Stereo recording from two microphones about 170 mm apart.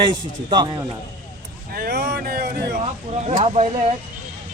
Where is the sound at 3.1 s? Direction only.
40° right (ahead or behind).